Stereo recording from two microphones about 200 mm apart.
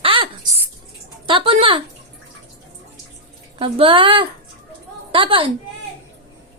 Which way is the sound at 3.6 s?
25° right (ahead or behind).